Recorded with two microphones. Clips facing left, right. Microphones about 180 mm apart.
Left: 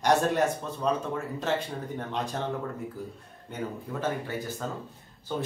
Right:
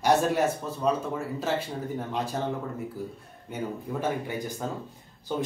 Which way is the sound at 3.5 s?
15° right (ahead or behind).